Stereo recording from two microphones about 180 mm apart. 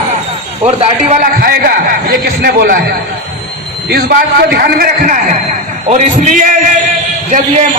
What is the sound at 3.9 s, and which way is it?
A man's voice, 60° right (ahead or behind).